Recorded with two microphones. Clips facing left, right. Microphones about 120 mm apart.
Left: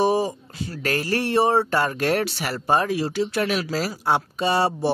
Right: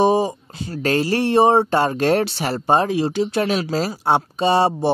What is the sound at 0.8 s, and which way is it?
Speech, 25° right (ahead or behind).